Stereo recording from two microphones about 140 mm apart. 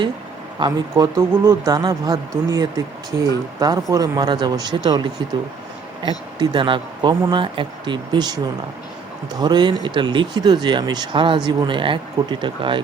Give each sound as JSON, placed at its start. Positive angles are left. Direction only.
{"t": 0.6, "sound": "a man's voice", "side_deg": -25}
{"t": 6.4, "sound": "speech", "side_deg": -35}